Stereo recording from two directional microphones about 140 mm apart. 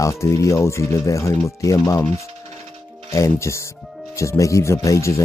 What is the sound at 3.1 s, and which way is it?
Speech, 20° left (ahead or behind).